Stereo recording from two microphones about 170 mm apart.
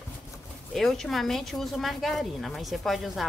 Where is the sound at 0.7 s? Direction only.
Centre (ahead or behind).